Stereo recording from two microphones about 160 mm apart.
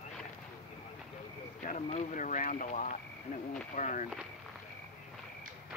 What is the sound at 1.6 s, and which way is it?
Speech, 50° left (ahead or behind).